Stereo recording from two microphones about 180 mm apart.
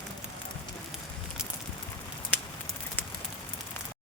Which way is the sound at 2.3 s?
10° left (ahead or behind).